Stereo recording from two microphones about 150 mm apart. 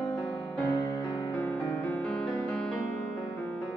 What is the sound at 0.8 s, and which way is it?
Music, 30° left (ahead or behind).